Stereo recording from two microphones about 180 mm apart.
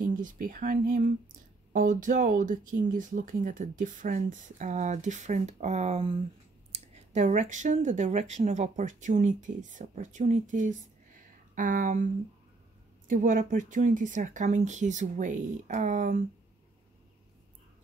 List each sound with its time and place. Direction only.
0.0 s speech: 45° right (ahead or behind)
13.1 s speech: 45° right (ahead or behind)